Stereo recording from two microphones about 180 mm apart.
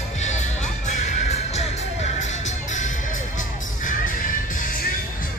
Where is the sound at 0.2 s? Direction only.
40° left (ahead or behind).